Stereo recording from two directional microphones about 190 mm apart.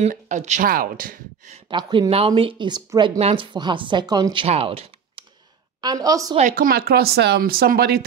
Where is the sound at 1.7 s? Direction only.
25° right (ahead or behind).